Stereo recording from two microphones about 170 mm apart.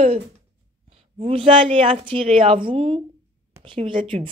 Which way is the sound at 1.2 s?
35° right (ahead or behind).